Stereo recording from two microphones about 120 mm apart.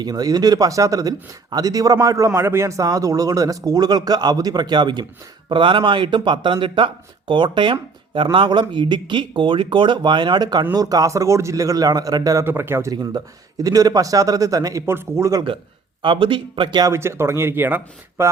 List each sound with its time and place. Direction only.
0.0 s speech: 35° right (ahead or behind)
12.5 s a man's voice: 20° right (ahead or behind)
12.9 s a man's voice: 35° right (ahead or behind)
16.0 s speech: 45° right (ahead or behind)
16.9 s a man's voice: 20° right (ahead or behind)